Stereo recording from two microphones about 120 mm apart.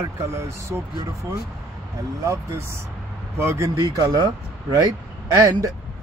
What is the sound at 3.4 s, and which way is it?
Speech, 20° right (ahead or behind).